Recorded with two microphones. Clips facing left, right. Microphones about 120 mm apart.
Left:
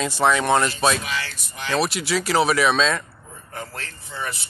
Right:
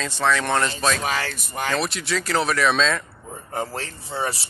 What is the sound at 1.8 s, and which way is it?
Speech, 5° left (ahead or behind).